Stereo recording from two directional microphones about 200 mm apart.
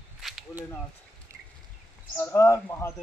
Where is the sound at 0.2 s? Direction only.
Centre (ahead or behind).